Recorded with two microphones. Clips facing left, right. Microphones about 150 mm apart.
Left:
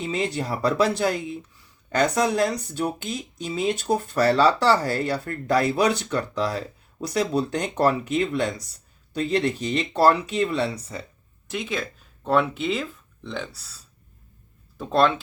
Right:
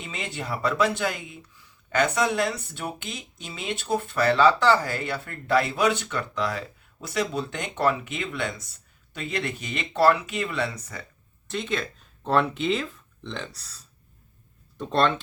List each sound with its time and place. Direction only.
0.0 s speech: 35° left (ahead or behind)
11.5 s speech: 5° left (ahead or behind)